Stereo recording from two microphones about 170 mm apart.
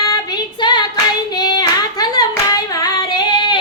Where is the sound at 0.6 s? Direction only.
25° left (ahead or behind).